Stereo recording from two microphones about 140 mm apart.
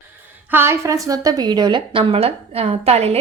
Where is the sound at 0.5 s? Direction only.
20° right (ahead or behind).